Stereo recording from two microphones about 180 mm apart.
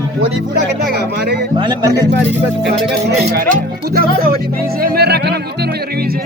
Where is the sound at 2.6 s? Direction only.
65° right (ahead or behind).